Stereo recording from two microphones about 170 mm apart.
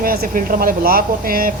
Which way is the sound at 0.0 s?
60° right (ahead or behind).